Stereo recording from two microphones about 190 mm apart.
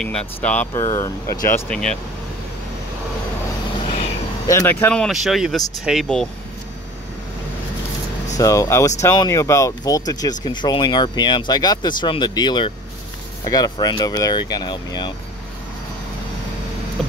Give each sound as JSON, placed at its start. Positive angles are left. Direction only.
{"t": 0.0, "sound": "speech", "side_deg": 5}
{"t": 1.7, "sound": "speech", "side_deg": 5}
{"t": 4.5, "sound": "speech", "side_deg": 15}
{"t": 8.4, "sound": "speech", "side_deg": 15}